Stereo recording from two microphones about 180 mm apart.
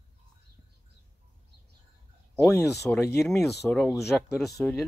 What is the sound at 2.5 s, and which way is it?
Speech, 15° left (ahead or behind).